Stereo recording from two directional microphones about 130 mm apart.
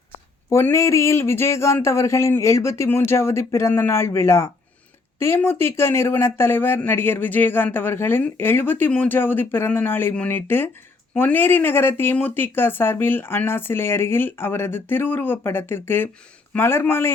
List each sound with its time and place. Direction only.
0.5 s speech: 20° left (ahead or behind)